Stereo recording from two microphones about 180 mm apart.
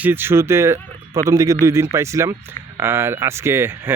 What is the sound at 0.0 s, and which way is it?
Speech, 10° right (ahead or behind).